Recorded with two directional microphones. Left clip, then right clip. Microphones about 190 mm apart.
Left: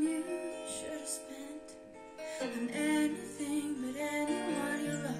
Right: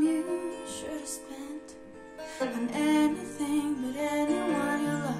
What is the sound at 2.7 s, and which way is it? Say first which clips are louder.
Music: right 6 dB; 25° left (ahead or behind).